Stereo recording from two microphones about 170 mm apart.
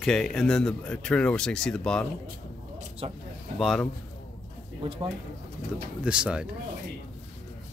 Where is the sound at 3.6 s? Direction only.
Centre (ahead or behind).